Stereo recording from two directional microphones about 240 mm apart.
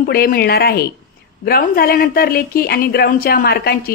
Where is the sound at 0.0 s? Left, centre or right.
Left.